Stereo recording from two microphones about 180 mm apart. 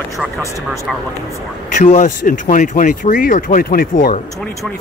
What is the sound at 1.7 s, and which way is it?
Speech, 45° left (ahead or behind).